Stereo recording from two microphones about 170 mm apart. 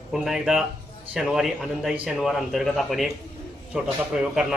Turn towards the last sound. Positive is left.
turn(degrees=-5)  # may be behind; listen again after turning